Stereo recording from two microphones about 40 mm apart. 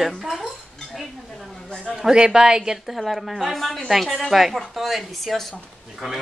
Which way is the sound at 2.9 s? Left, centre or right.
Centre.